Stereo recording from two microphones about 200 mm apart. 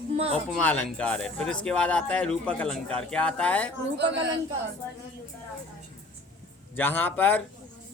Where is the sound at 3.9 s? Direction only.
60° right (ahead or behind).